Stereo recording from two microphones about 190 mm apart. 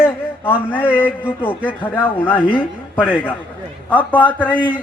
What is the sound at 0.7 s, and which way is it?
Speech, 10° left (ahead or behind).